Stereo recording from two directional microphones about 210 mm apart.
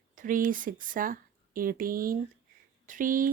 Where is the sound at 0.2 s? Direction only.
40° right (ahead or behind).